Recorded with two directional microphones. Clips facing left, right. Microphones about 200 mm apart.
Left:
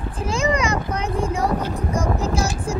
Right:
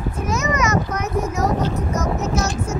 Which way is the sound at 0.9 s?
30° left (ahead or behind).